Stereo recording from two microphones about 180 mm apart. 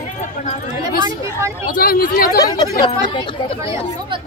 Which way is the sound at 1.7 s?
55° left (ahead or behind).